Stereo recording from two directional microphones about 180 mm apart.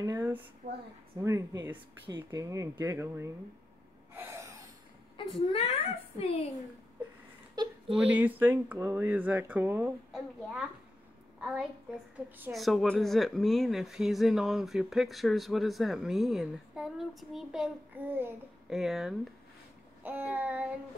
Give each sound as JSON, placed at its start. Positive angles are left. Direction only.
{"t": 0.0, "sound": "speech", "side_deg": -15}
{"t": 0.6, "sound": "a woman's voice", "side_deg": -35}
{"t": 1.1, "sound": "speech", "side_deg": -15}
{"t": 4.1, "sound": "gasp", "side_deg": -15}
{"t": 5.1, "sound": "a woman's voice", "side_deg": 35}
{"t": 8.0, "sound": "speech", "side_deg": -10}